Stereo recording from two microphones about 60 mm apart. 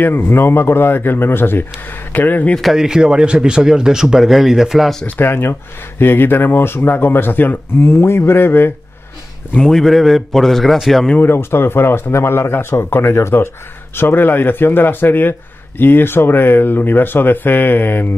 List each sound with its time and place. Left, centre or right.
0.0 s speech: left
2.6 s speech: centre
5.0 s speech: left
9.5 s a man's voice: centre
11.1 s speech: left
13.9 s speech: left